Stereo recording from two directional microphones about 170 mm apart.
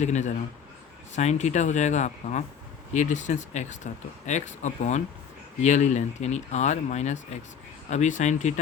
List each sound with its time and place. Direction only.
0.0 s speech: 45° left (ahead or behind)